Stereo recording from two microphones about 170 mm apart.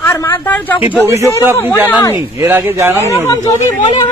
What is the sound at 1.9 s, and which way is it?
Speech, 15° left (ahead or behind).